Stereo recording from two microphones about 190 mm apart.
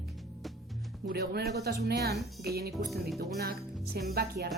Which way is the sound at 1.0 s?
55° right (ahead or behind).